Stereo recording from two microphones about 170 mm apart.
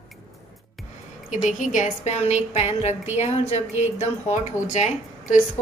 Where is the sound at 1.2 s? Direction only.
50° left (ahead or behind).